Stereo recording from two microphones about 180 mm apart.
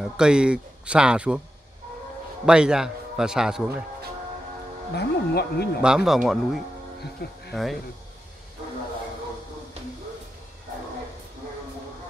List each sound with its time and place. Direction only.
0.2 s a man's voice: 5° right (ahead or behind)
2.4 s a man's voice: 5° right (ahead or behind)
4.9 s speech: 65° left (ahead or behind)
5.8 s a man's voice: 5° right (ahead or behind)
7.2 s speech: 65° left (ahead or behind)